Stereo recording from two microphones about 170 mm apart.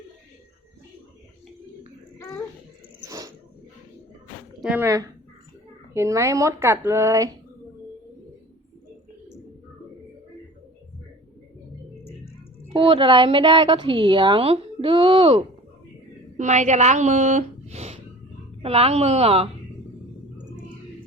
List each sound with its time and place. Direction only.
3.0 s a sound: 20° right (ahead or behind)
4.6 s speech: 10° right (ahead or behind)
5.9 s speech: 15° right (ahead or behind)
12.6 s a woman's voice: 35° right (ahead or behind)